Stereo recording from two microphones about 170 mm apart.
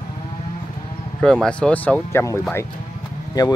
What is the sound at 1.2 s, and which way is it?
Speech, 5° left (ahead or behind).